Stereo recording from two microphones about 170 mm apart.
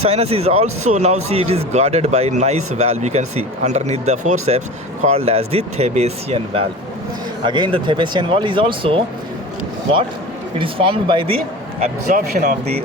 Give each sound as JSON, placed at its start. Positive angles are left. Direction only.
{"t": 0.0, "sound": "speech", "side_deg": -35}
{"t": 10.6, "sound": "speech", "side_deg": -30}
{"t": 11.8, "sound": "speech", "side_deg": -45}